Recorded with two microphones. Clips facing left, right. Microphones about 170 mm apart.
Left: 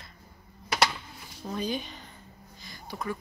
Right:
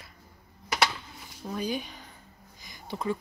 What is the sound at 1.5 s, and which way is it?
Speech, 10° right (ahead or behind).